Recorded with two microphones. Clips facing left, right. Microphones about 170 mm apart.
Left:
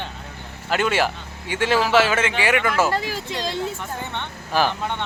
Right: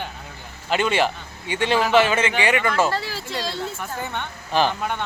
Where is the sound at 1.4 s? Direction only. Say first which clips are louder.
Left 1 dB; 15° right (ahead or behind).